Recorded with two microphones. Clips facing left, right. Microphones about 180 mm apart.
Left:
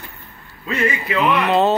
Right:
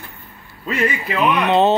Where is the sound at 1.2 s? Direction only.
20° right (ahead or behind).